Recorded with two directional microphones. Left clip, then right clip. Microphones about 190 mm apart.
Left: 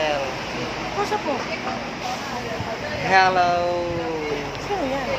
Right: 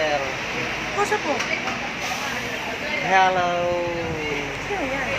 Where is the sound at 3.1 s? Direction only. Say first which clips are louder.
Left 2 dB; centre (ahead or behind).